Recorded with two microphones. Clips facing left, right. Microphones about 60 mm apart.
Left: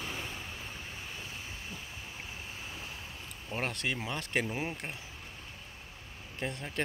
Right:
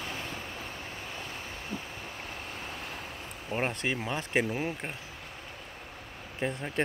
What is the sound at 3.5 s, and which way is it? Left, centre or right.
Speech, right.